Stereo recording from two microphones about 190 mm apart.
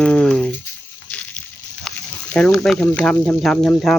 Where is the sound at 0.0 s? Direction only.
5° left (ahead or behind).